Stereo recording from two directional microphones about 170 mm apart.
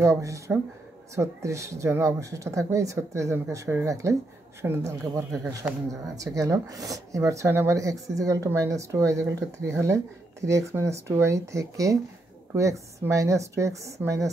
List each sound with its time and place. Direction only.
0.0 s speech: 15° right (ahead or behind)